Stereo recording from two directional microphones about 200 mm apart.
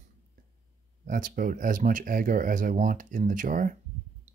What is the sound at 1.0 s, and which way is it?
Speech, 40° right (ahead or behind).